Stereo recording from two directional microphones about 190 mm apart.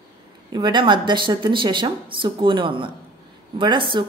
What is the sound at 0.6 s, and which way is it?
A woman's voice, 25° right (ahead or behind).